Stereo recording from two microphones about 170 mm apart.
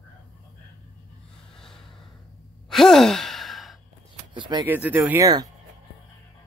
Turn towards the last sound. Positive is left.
turn(degrees=-20)  # may be behind; listen again after turning